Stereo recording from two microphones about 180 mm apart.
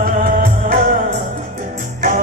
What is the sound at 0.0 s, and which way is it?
Music, 50° right (ahead or behind).